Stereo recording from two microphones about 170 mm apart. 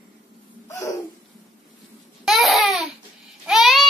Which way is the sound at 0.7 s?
15° left (ahead or behind).